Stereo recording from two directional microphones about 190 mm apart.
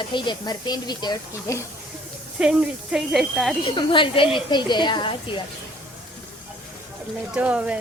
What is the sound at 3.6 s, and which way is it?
Speech, 25° left (ahead or behind).